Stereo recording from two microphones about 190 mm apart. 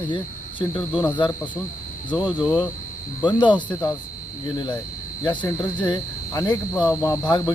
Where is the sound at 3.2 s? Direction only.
25° left (ahead or behind).